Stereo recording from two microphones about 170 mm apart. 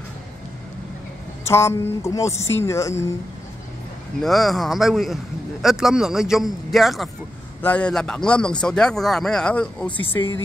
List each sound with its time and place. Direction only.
1.5 s speech: 15° left (ahead or behind)
4.2 s speech: centre (ahead or behind)